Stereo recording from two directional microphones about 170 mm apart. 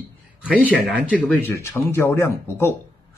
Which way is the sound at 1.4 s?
15° left (ahead or behind).